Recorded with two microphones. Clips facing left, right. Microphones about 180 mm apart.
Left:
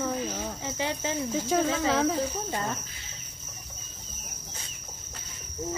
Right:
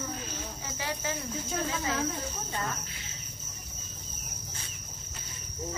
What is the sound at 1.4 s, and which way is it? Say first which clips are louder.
Speech: left 7 dB; 90° left.